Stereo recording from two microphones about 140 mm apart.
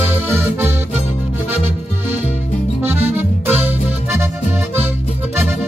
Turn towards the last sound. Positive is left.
turn(degrees=-10)  # may be behind; listen again after turning